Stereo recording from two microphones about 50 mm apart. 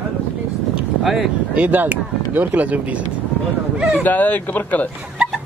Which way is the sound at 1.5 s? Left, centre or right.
Right.